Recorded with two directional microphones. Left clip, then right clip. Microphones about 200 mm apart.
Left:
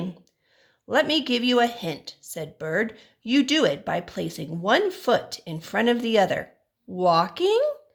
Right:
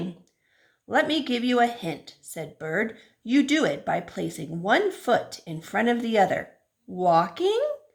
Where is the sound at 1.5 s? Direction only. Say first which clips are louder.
Even; 40° left (ahead or behind).